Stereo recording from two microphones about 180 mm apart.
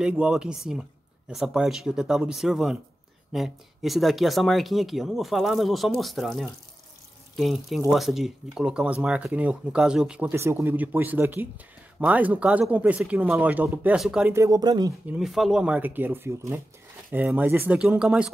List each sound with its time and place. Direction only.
0.0 s speech: 5° right (ahead or behind)
14.3 s speech: 20° right (ahead or behind)
15.0 s speech: centre (ahead or behind)